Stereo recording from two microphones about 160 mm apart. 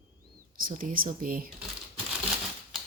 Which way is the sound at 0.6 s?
60° right (ahead or behind).